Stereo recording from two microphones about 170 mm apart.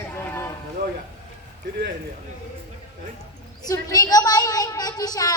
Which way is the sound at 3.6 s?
20° left (ahead or behind).